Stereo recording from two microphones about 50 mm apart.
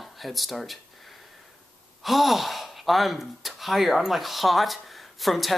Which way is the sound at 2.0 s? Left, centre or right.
Centre.